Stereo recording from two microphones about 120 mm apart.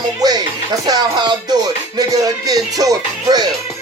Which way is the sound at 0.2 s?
35° right (ahead or behind).